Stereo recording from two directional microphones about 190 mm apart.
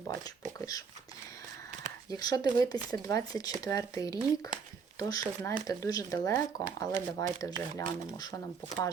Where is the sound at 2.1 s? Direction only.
20° left (ahead or behind).